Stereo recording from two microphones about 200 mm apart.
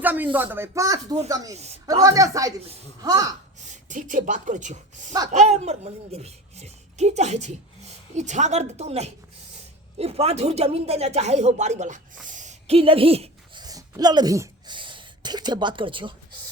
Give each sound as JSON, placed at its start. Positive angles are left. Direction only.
{"t": 0.0, "sound": "speech", "side_deg": -10}
{"t": 3.8, "sound": "speech", "side_deg": -40}